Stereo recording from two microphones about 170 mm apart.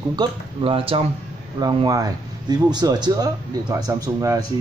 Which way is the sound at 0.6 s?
35° right (ahead or behind).